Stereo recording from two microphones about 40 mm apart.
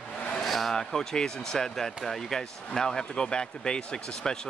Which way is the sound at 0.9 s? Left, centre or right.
Centre.